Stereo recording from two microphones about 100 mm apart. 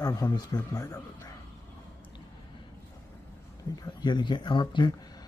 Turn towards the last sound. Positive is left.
turn(degrees=50)  # may be behind; listen again after turning